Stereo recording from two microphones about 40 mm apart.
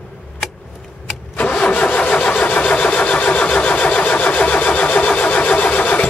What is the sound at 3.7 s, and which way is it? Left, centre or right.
Vehicle, left.